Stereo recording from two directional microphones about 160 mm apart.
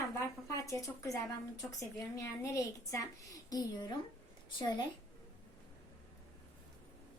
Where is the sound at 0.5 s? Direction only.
20° left (ahead or behind).